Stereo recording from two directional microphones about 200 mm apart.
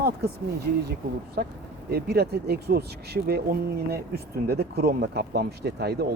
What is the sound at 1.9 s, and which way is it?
Speech, 55° right (ahead or behind).